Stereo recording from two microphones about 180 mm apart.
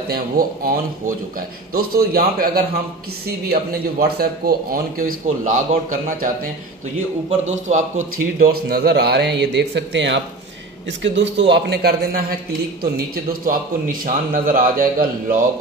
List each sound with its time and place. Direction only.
0.1 s a man's voice: 55° right (ahead or behind)
4.0 s a man's voice: 60° right (ahead or behind); by 7.8 s 45° right (ahead or behind)
8.4 s a man's voice: 60° right (ahead or behind)